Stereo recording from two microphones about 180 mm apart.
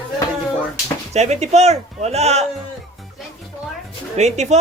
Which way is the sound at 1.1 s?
40° right (ahead or behind).